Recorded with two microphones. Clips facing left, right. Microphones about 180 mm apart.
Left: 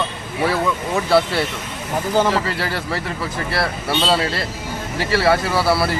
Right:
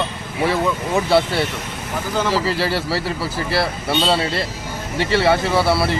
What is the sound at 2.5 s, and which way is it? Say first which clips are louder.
Speech: right 3 dB; 30° right (ahead or behind).